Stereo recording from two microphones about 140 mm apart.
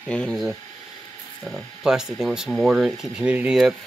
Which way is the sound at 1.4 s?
Centre (ahead or behind).